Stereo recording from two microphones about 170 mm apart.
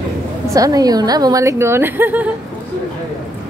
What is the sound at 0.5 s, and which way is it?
A woman's voice, 20° right (ahead or behind).